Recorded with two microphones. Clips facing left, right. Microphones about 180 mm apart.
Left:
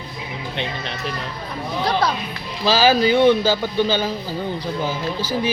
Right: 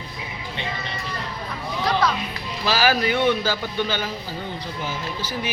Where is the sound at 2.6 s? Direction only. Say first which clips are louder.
Left 5 dB; 25° left (ahead or behind).